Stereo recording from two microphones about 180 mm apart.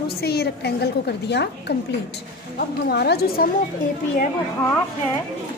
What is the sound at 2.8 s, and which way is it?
Speech, 65° left (ahead or behind).